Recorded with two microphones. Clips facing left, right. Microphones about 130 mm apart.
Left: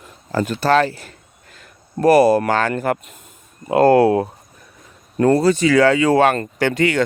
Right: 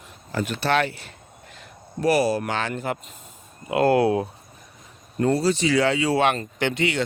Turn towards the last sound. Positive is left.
turn(degrees=45)  # may be behind; listen again after turning